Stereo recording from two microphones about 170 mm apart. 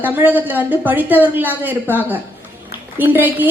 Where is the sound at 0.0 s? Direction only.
10° right (ahead or behind).